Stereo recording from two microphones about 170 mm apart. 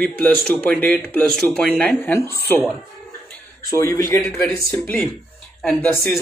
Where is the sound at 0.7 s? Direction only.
10° left (ahead or behind).